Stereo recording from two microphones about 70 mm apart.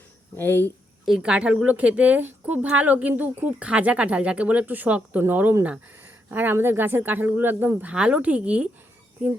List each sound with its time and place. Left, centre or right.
0.3 s speech: left
1.2 s speech: centre
7.8 s speech: centre